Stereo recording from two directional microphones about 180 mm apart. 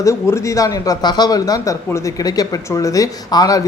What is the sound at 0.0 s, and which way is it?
A man's voice, 15° left (ahead or behind).